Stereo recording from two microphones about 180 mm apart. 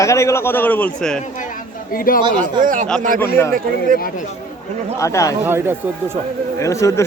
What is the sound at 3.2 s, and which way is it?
Speech, 15° left (ahead or behind).